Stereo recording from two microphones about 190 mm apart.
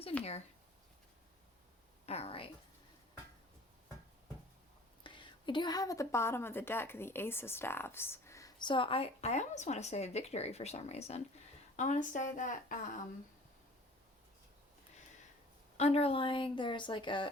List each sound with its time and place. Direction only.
2.0 s speech: 30° left (ahead or behind)
5.0 s a woman's voice: 25° left (ahead or behind); by 13.0 s 40° left (ahead or behind)
15.8 s a woman's voice: 30° left (ahead or behind)